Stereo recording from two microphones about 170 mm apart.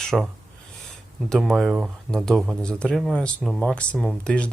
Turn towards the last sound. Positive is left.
turn(degrees=5)  # may be behind; listen again after turning